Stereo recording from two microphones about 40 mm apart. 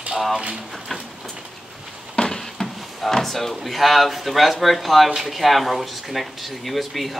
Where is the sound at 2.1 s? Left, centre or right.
Centre.